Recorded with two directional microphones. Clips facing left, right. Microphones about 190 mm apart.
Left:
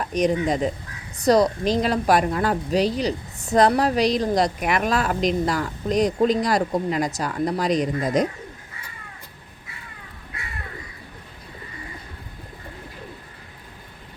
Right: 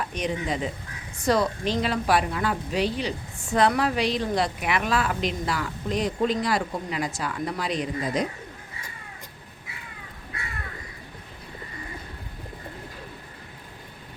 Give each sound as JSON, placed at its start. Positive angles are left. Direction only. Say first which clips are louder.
{"t": 0.1, "sound": "a woman's voice", "louder": "left 7 dB", "side_deg": 40}